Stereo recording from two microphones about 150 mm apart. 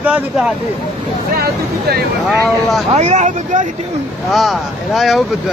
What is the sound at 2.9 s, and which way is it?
Speech, 50° right (ahead or behind).